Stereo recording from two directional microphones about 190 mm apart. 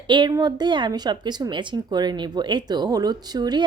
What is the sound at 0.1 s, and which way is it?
A woman's voice, 20° right (ahead or behind).